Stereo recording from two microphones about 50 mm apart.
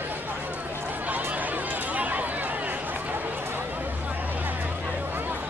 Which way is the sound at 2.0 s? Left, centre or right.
Right.